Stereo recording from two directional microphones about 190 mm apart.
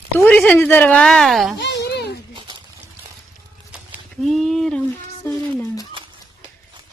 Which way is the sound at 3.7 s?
5° right (ahead or behind).